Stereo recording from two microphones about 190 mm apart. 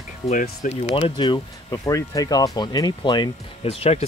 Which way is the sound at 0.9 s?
25° left (ahead or behind).